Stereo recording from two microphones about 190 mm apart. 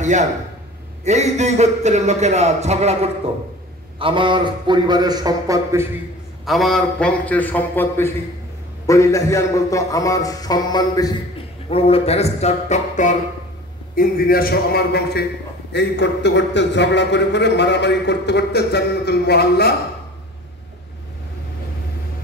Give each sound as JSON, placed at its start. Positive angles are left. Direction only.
{"t": 0.0, "sound": "a man's voice", "side_deg": -40}
{"t": 6.4, "sound": "a man's voice", "side_deg": 0}
{"t": 11.7, "sound": "a man's voice", "side_deg": 30}